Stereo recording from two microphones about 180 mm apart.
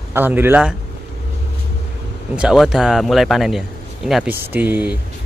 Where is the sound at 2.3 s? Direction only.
Centre (ahead or behind).